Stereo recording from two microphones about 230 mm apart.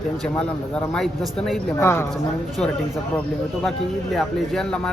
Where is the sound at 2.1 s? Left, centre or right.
Centre.